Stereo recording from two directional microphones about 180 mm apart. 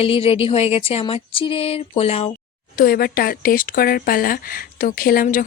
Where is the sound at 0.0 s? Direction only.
30° left (ahead or behind).